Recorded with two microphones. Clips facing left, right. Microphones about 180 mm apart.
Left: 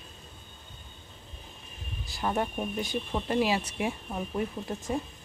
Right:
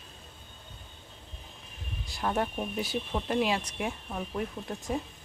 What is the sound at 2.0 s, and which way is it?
Speech, centre (ahead or behind).